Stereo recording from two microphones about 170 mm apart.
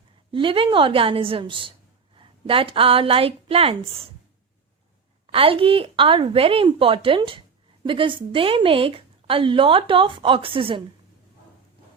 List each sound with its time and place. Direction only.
0.3 s a woman's voice: 30° right (ahead or behind)
5.2 s a woman's voice: 35° right (ahead or behind)